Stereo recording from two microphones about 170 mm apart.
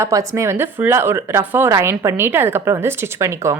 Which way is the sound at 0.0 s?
20° right (ahead or behind).